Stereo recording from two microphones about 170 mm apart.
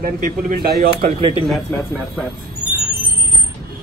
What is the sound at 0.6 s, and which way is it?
Speech, 65° right (ahead or behind).